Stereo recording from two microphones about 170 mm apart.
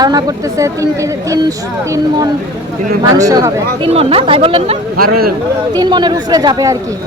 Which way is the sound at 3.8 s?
35° right (ahead or behind).